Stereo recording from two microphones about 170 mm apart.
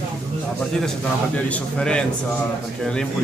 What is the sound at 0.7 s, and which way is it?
A man's voice, 5° left (ahead or behind).